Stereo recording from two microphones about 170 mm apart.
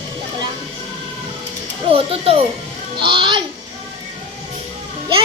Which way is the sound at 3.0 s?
30° right (ahead or behind).